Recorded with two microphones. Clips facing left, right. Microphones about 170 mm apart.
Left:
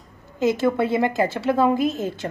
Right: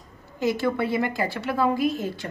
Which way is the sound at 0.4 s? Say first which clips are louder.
Left 4 dB; 20° left (ahead or behind).